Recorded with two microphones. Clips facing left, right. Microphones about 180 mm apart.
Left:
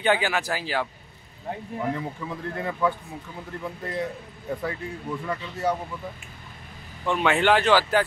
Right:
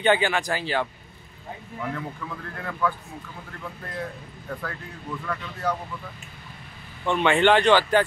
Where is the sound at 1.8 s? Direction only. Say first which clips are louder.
Left 2 dB; 20° left (ahead or behind).